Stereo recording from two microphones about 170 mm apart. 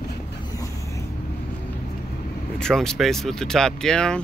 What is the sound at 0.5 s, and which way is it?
Vehicle, 20° left (ahead or behind).